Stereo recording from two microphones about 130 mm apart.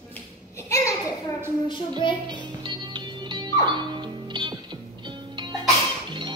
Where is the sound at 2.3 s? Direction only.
35° right (ahead or behind).